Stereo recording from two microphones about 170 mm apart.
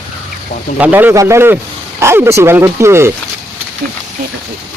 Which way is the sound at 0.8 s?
10° right (ahead or behind).